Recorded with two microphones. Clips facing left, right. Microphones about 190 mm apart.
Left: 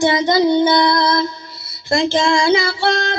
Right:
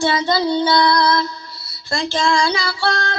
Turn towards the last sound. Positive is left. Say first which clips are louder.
# left 3 dB
turn(degrees=20)  # may be behind; listen again after turning